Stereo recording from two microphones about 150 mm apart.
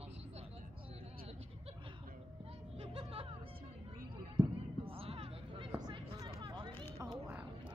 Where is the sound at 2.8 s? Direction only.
40° right (ahead or behind).